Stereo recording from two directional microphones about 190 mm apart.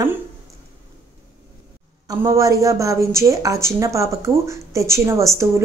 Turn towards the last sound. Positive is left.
turn(degrees=-15)  # may be behind; listen again after turning